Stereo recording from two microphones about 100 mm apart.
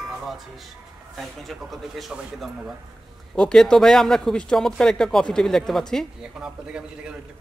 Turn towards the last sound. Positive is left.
turn(degrees=-10)  # may be behind; listen again after turning